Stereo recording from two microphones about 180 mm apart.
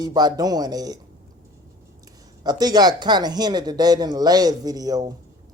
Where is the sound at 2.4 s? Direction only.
20° right (ahead or behind).